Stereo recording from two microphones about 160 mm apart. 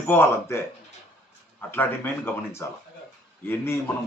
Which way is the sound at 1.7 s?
15° left (ahead or behind).